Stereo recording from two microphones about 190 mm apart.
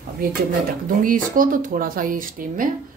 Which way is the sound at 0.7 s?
45° right (ahead or behind).